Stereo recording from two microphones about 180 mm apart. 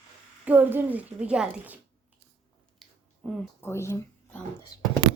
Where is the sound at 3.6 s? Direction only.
15° left (ahead or behind).